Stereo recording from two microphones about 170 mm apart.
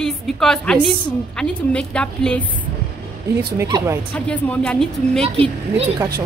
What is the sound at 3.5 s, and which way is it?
Speech, 20° right (ahead or behind).